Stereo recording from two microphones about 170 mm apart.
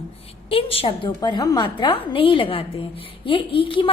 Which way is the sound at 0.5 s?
35° left (ahead or behind).